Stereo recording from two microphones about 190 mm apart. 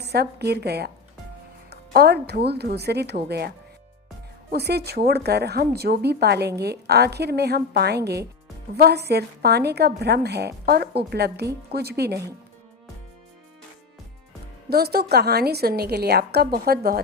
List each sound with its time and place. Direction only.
0.0 s a woman's voice: 60° right (ahead or behind)
4.5 s a woman's voice: 60° right (ahead or behind)
14.7 s a woman's voice: 55° right (ahead or behind)